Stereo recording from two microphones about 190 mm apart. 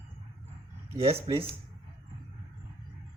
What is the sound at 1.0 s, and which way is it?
Speech, 30° right (ahead or behind).